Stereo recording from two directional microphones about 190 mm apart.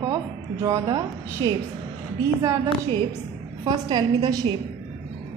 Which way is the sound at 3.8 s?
25° right (ahead or behind).